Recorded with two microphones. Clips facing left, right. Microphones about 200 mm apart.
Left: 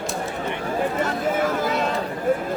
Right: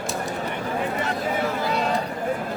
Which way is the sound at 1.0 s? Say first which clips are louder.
Left 3 dB; 50° left (ahead or behind).